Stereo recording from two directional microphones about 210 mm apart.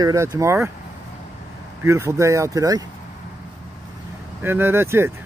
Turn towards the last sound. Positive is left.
turn(degrees=-10)  # may be behind; listen again after turning